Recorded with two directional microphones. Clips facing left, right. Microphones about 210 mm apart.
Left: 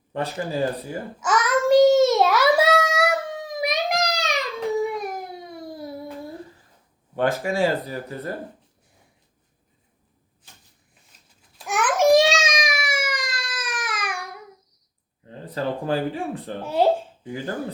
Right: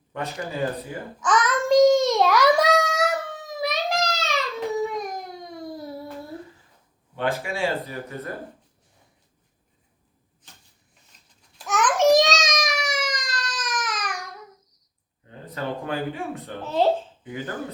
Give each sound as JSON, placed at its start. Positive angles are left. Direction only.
{"t": 0.1, "sound": "speech", "side_deg": 30}
{"t": 1.2, "sound": "child singing", "side_deg": 5}
{"t": 3.0, "sound": "a sound", "side_deg": 15}
{"t": 7.4, "sound": "speech", "side_deg": 40}
{"t": 11.6, "sound": "babbling", "side_deg": 15}
{"t": 13.4, "sound": "baby cry", "side_deg": 10}
{"t": 15.3, "sound": "speech", "side_deg": 30}
{"t": 16.6, "sound": "speech", "side_deg": 10}
{"t": 17.2, "sound": "speech", "side_deg": 30}